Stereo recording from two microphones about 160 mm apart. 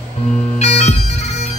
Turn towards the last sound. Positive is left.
turn(degrees=45)  # may be behind; listen again after turning